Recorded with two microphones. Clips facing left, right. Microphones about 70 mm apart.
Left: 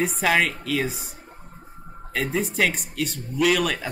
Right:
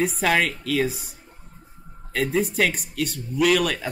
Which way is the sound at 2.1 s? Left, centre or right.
Centre.